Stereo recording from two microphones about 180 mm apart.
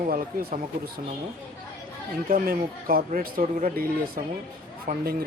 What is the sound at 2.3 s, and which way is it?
Speech, 55° right (ahead or behind).